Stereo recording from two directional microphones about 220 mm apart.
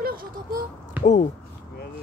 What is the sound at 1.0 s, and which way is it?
Speech, 35° left (ahead or behind).